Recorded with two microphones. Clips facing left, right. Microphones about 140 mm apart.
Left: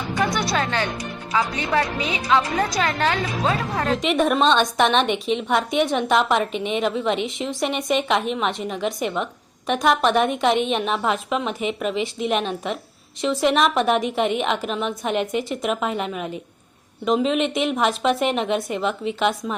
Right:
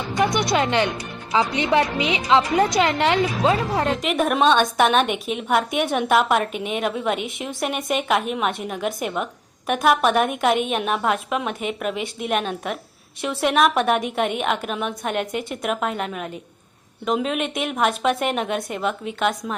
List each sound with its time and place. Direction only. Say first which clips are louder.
0.5 s a woman's voice: right 3 dB; 20° right (ahead or behind)
4.0 s a woman's voice: left 2 dB; centre (ahead or behind)